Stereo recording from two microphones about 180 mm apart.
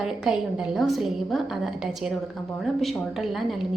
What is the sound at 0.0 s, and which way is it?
A woman's voice, 5° right (ahead or behind).